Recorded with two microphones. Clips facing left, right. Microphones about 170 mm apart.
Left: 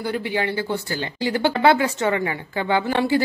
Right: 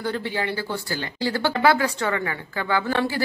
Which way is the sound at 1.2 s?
20° left (ahead or behind).